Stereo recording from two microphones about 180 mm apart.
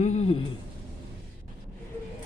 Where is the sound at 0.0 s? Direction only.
40° left (ahead or behind).